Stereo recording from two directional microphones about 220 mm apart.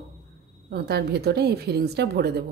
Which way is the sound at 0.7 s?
45° right (ahead or behind).